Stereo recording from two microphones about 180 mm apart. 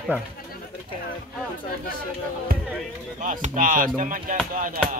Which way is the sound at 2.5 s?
55° right (ahead or behind).